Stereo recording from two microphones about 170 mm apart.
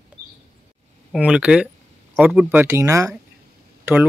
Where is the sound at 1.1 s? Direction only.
5° right (ahead or behind).